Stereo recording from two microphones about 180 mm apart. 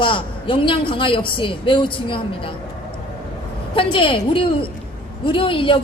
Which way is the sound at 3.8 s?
30° left (ahead or behind).